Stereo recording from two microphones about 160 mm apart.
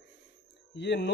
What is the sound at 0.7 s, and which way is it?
Speech, 90° left.